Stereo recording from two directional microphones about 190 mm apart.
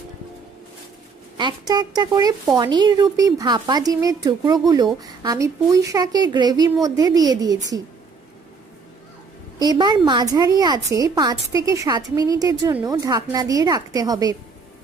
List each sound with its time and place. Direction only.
1.4 s speech: 20° right (ahead or behind)
9.6 s speech: 20° right (ahead or behind)